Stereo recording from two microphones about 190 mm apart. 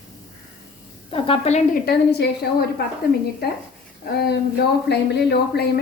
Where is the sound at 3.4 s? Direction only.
55° left (ahead or behind).